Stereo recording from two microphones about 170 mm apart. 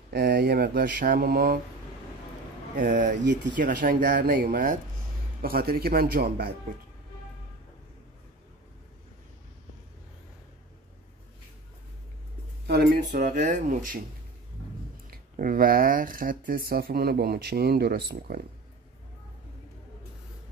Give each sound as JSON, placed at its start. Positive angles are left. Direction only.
{"t": 0.1, "sound": "speech", "side_deg": -65}
{"t": 2.7, "sound": "speech", "side_deg": -50}
{"t": 12.6, "sound": "a sound", "side_deg": -70}
{"t": 13.2, "sound": "speech", "side_deg": -45}
{"t": 15.0, "sound": "speech", "side_deg": -55}